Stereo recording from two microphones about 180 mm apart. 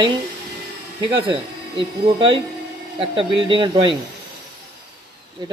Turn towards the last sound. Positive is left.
turn(degrees=-25)  # may be behind; listen again after turning